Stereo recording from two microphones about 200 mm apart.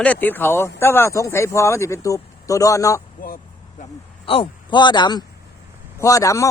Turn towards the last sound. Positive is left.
turn(degrees=15)  # may be behind; listen again after turning